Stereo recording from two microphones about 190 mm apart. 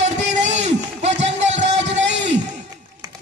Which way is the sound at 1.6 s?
75° right (ahead or behind).